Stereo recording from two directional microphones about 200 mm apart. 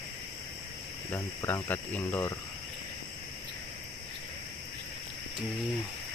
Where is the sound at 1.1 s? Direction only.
10° left (ahead or behind).